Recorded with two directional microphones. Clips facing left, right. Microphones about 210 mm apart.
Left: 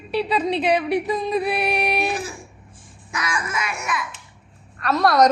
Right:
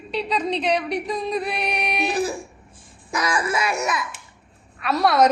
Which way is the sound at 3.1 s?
35° right (ahead or behind).